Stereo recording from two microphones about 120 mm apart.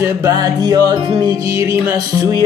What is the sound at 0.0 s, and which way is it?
Speech, 30° right (ahead or behind).